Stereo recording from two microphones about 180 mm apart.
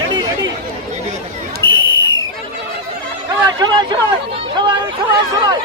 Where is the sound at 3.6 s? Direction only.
25° right (ahead or behind).